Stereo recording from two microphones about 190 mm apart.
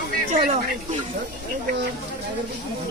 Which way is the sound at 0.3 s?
45° right (ahead or behind).